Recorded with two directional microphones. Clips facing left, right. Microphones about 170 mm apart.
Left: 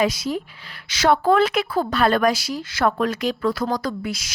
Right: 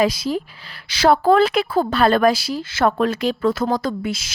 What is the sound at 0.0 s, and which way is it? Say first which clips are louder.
A woman's voice: right 3 dB; 35° right (ahead or behind).